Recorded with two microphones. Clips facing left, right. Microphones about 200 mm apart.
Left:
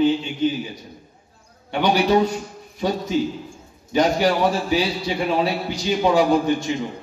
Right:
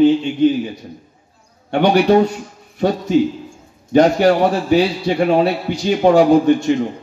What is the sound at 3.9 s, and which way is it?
A man's voice, 50° right (ahead or behind).